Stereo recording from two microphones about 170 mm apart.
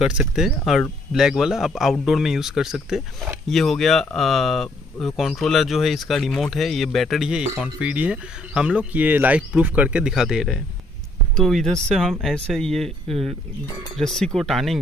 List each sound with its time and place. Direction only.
0.0 s speech: 5° right (ahead or behind)